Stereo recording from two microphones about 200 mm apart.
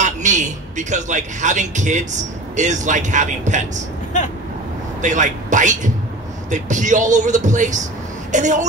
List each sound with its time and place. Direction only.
0.0 s a man's voice: 35° right (ahead or behind)
4.1 s vehicle: 40° left (ahead or behind)
5.0 s speech: 40° right (ahead or behind)